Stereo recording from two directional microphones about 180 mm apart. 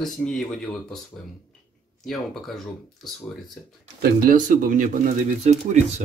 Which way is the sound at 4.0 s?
50° right (ahead or behind).